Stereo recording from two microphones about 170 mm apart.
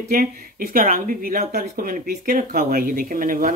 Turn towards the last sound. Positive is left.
turn(degrees=-55)  # may be behind; listen again after turning